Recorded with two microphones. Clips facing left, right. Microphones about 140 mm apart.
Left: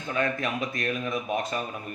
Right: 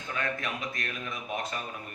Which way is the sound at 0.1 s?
25° left (ahead or behind).